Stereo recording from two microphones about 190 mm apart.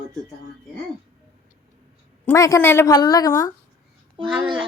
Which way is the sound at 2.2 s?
15° left (ahead or behind).